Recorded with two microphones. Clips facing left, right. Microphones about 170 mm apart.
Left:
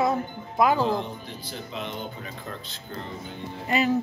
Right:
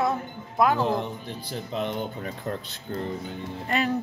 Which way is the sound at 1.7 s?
50° right (ahead or behind).